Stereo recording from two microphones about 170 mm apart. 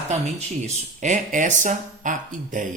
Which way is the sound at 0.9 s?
45° right (ahead or behind).